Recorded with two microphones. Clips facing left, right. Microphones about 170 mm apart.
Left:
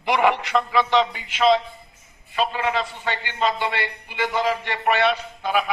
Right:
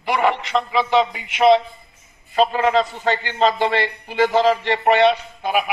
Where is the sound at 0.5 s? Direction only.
Centre (ahead or behind).